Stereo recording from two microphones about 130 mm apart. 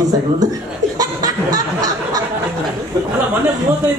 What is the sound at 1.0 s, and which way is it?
Chicken, 30° right (ahead or behind).